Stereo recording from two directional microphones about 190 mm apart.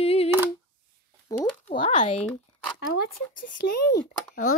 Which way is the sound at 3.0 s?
50° left (ahead or behind).